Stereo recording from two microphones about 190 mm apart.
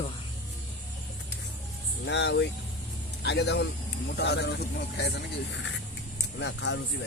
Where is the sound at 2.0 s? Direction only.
65° left (ahead or behind).